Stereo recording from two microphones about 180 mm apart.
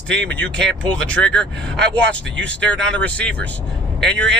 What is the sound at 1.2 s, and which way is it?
Speech, 5° left (ahead or behind).